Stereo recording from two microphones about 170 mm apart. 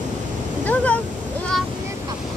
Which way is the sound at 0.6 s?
10° left (ahead or behind).